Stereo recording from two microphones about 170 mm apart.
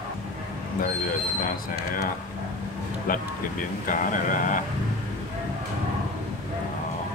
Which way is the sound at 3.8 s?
50° left (ahead or behind).